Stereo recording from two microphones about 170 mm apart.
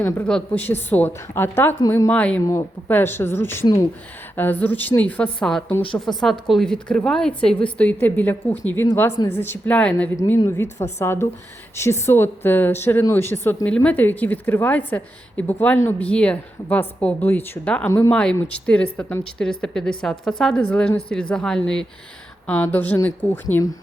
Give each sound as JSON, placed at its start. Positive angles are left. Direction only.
{"t": 0.0, "sound": "a woman's voice", "side_deg": 5}